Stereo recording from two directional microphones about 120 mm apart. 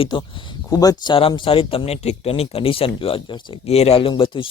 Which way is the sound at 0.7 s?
30° left (ahead or behind).